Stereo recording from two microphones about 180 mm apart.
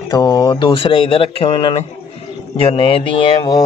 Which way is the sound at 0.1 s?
25° left (ahead or behind).